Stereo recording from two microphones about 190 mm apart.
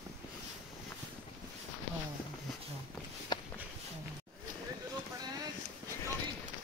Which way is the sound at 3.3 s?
25° left (ahead or behind).